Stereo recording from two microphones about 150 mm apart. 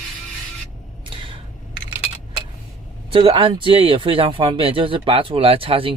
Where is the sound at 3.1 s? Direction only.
35° right (ahead or behind).